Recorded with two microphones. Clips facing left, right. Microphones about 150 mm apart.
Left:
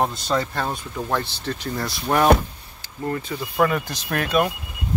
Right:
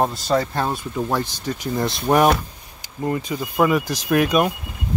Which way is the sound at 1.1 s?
10° right (ahead or behind).